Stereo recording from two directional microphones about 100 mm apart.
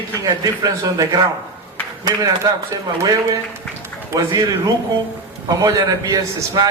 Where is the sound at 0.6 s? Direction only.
40° right (ahead or behind).